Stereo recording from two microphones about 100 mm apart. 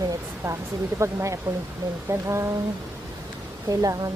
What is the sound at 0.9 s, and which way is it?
Speech, 30° right (ahead or behind).